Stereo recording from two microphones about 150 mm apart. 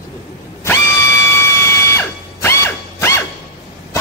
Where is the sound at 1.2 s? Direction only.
15° left (ahead or behind).